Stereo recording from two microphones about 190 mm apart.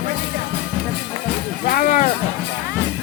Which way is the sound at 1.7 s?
45° left (ahead or behind).